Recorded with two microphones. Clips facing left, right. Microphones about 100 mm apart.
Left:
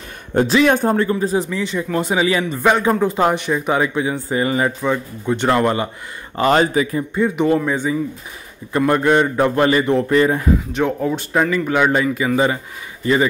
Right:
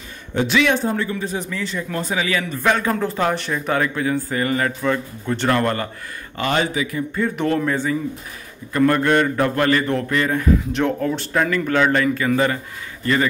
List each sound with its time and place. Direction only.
0.3 s speech: 40° left (ahead or behind)
0.7 s speech: 50° left (ahead or behind)
1.5 s a man's voice: 20° left (ahead or behind)
6.3 s speech: 35° left (ahead or behind)
7.2 s a man's voice: 15° left (ahead or behind)
11.0 s a man's voice: 15° left (ahead or behind)